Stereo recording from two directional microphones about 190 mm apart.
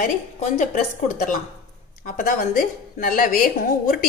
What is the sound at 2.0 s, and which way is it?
A woman's voice, 50° left (ahead or behind).